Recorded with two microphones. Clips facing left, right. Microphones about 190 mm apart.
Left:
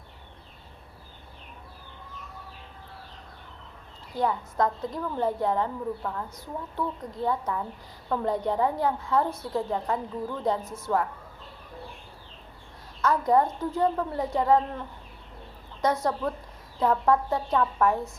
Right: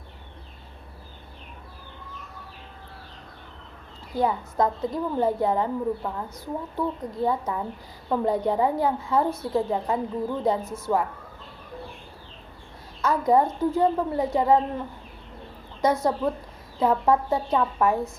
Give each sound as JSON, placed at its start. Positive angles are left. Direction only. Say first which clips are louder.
{"t": 4.2, "sound": "a woman's voice", "louder": "right 2 dB", "side_deg": -10}
{"t": 10.4, "sound": "a woman's voice", "louder": "right 1 dB", "side_deg": -5}
{"t": 13.0, "sound": "a woman's voice", "louder": "right 2 dB", "side_deg": -5}